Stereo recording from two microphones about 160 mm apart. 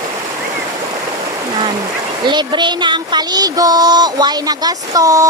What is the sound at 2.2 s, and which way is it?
Speech, 30° right (ahead or behind).